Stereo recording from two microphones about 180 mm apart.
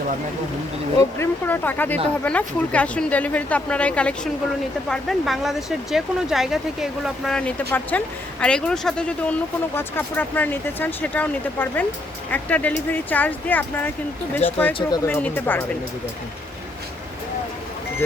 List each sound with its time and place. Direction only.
1.2 s speech: 10° left (ahead or behind)
14.7 s speech: 30° left (ahead or behind)
15.0 s speech: 10° left (ahead or behind)